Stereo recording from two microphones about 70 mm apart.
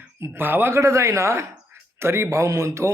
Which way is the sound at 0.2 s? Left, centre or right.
Right.